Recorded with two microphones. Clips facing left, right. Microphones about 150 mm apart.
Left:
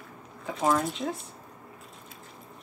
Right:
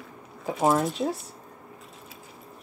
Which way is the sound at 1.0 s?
20° right (ahead or behind).